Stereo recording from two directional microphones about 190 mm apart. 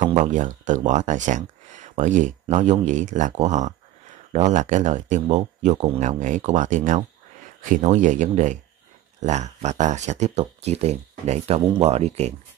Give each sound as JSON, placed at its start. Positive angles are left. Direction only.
{"t": 0.2, "sound": "speech", "side_deg": -40}